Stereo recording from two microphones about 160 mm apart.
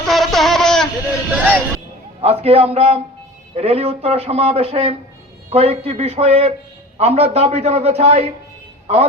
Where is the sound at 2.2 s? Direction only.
40° right (ahead or behind).